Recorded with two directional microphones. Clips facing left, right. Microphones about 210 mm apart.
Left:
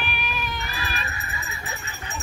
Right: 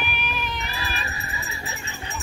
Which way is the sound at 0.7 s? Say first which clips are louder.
Even; 35° right (ahead or behind).